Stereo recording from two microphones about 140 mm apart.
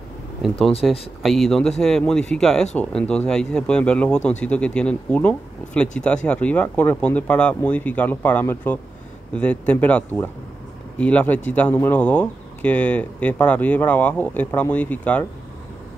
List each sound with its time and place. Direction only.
0.6 s speech: 45° left (ahead or behind)
1.2 s speech: centre (ahead or behind)